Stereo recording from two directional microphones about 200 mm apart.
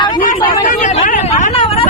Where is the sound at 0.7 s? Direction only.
35° left (ahead or behind).